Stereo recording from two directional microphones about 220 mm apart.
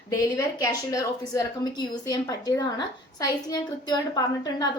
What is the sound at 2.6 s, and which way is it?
Speech, 15° left (ahead or behind).